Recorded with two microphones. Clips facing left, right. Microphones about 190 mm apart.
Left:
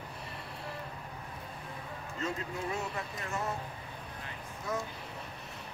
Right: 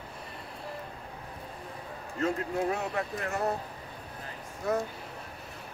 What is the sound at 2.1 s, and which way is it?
Speech, 55° right (ahead or behind).